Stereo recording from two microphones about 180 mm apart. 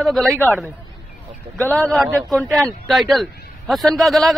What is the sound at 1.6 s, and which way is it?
Speech, 10° left (ahead or behind).